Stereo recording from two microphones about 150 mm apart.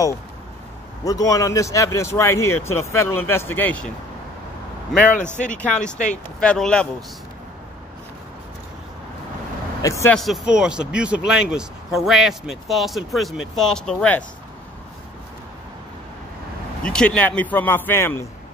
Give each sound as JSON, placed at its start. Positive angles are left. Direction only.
{"t": 1.0, "sound": "speech", "side_deg": 25}
{"t": 5.5, "sound": "speech", "side_deg": 10}
{"t": 9.8, "sound": "speech", "side_deg": 20}
{"t": 10.1, "sound": "speech", "side_deg": 0}
{"t": 16.8, "sound": "speech", "side_deg": 5}